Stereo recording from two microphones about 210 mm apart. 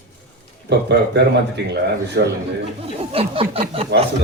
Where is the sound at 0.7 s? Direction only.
55° right (ahead or behind).